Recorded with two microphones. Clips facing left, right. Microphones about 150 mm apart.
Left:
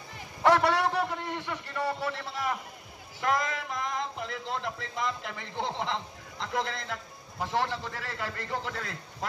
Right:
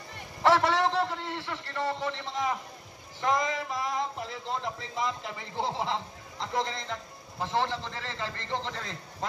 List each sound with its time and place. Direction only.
0.4 s a sound: 10° left (ahead or behind)
3.2 s speech: centre (ahead or behind)
7.5 s a man's voice: 15° right (ahead or behind)
7.8 s a man's voice: 10° left (ahead or behind)